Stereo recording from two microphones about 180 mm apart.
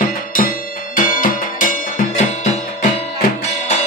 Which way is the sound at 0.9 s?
50° left (ahead or behind).